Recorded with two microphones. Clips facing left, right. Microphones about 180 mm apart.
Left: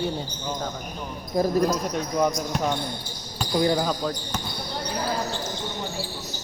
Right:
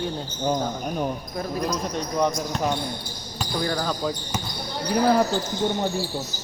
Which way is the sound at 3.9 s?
5° right (ahead or behind).